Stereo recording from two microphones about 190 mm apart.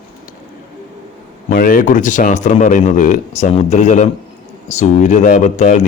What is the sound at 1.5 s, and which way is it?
Speech, 45° left (ahead or behind).